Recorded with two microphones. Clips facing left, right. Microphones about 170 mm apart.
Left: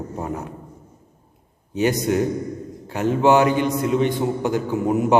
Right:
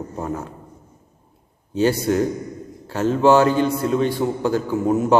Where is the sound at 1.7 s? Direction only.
15° left (ahead or behind).